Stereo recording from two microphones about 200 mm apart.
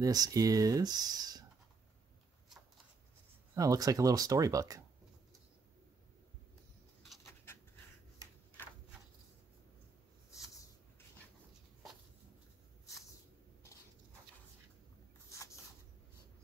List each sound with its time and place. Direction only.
0.0 s speech: 20° right (ahead or behind)
3.5 s speech: 15° right (ahead or behind)
7.5 s pant: 10° left (ahead or behind)